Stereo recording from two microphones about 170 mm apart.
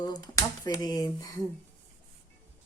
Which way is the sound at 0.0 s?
20° left (ahead or behind).